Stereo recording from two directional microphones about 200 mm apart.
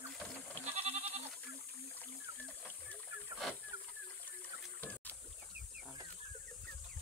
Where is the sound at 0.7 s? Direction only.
30° right (ahead or behind).